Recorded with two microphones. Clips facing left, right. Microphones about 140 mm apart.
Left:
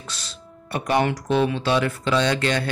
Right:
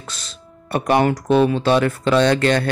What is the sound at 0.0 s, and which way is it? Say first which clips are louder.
Speech: right 1 dB; 50° right (ahead or behind).